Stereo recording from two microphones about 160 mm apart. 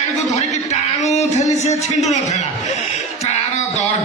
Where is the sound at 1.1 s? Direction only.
45° left (ahead or behind).